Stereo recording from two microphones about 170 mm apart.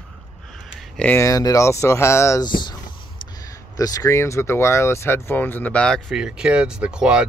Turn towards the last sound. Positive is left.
turn(degrees=-5)  # may be behind; listen again after turning